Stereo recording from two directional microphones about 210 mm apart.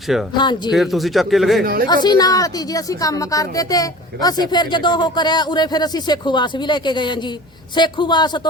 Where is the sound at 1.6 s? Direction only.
45° right (ahead or behind).